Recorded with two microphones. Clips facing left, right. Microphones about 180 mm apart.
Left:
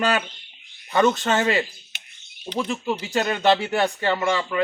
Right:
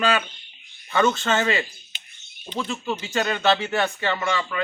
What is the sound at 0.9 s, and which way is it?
Speech, 35° left (ahead or behind).